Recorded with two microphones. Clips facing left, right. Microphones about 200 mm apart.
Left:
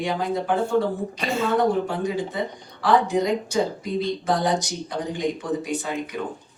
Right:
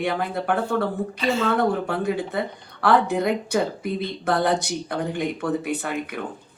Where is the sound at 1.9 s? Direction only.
60° right (ahead or behind).